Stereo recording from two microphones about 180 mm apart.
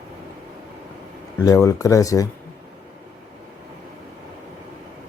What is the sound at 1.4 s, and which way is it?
Speech, 15° left (ahead or behind).